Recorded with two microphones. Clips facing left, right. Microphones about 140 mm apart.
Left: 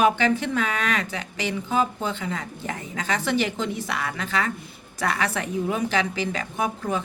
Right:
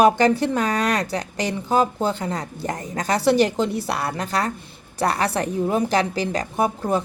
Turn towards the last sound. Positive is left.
turn(degrees=-35)  # may be behind; listen again after turning